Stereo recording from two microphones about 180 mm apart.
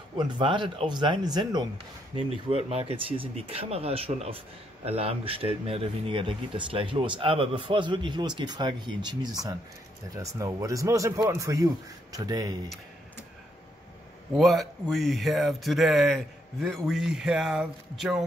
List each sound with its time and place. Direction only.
0.2 s a man's voice: 25° right (ahead or behind)
14.3 s speech: centre (ahead or behind)